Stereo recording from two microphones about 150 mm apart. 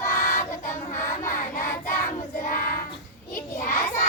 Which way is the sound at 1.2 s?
65° left (ahead or behind).